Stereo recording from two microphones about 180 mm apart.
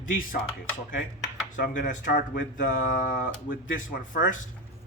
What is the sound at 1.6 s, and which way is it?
Speech, 45° left (ahead or behind).